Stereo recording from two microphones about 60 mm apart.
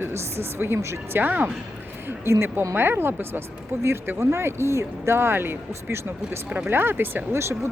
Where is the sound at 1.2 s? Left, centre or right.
Right.